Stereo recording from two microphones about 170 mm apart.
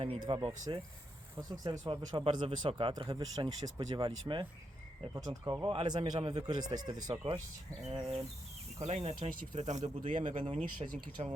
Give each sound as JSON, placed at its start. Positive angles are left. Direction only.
{"t": 0.0, "sound": "speech", "side_deg": -30}
{"t": 1.4, "sound": "speech", "side_deg": -20}
{"t": 7.9, "sound": "speech", "side_deg": -35}